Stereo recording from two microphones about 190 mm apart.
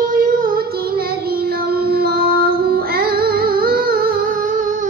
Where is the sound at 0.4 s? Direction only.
55° right (ahead or behind).